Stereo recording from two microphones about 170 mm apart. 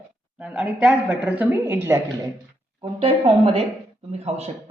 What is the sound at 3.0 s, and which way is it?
A woman's voice, 35° right (ahead or behind).